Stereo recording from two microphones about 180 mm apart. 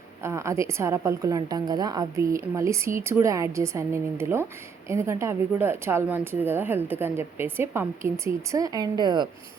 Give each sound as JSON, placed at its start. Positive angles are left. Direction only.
{"t": 0.2, "sound": "speech", "side_deg": -15}